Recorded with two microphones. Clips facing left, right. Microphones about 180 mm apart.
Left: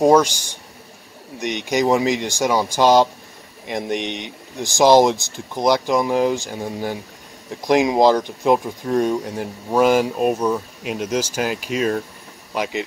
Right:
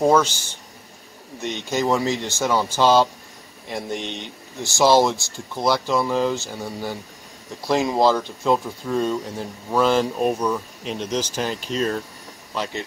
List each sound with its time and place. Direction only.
0.0 s speech: 15° left (ahead or behind)